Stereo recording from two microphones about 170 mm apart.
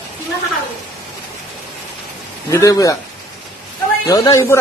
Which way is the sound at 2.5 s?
20° left (ahead or behind).